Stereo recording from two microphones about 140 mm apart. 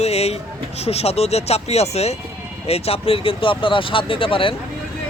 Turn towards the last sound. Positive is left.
turn(degrees=40)  # may be behind; listen again after turning